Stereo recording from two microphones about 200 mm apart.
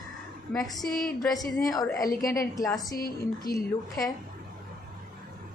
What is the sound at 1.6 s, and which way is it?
A woman's voice, 15° left (ahead or behind).